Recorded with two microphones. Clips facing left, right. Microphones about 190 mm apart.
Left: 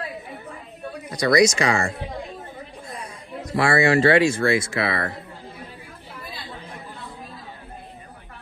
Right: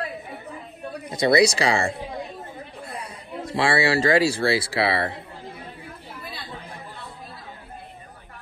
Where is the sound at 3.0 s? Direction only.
30° right (ahead or behind).